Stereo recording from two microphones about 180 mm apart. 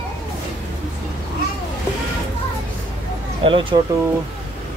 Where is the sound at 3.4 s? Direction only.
30° right (ahead or behind).